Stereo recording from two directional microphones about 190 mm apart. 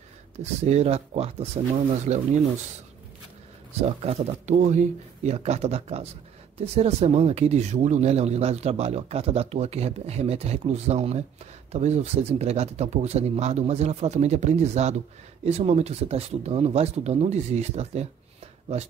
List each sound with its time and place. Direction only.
0.4 s speech: 35° right (ahead or behind)
4.0 s speech: 35° right (ahead or behind)